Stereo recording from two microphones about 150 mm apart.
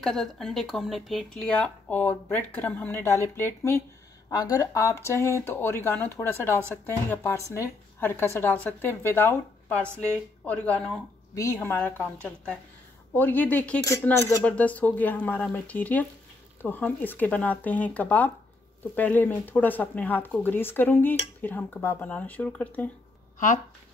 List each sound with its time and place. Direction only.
0.0 s speech: 5° left (ahead or behind)